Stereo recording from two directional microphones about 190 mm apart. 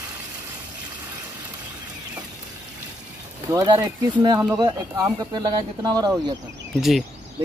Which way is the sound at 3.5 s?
20° right (ahead or behind).